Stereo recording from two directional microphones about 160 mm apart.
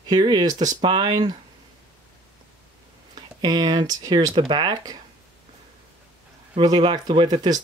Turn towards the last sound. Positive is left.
turn(degrees=-25)  # may be behind; listen again after turning